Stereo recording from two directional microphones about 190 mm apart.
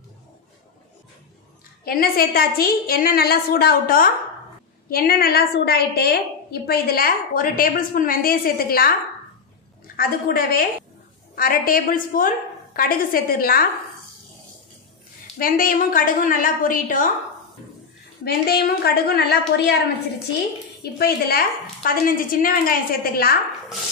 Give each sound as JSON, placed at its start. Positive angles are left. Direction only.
{"t": 1.9, "sound": "a woman's voice", "side_deg": 50}
{"t": 9.9, "sound": "a woman's voice", "side_deg": 50}
{"t": 15.3, "sound": "a woman's voice", "side_deg": 50}
{"t": 18.2, "sound": "a woman's voice", "side_deg": 55}
{"t": 20.8, "sound": "a woman's voice", "side_deg": 55}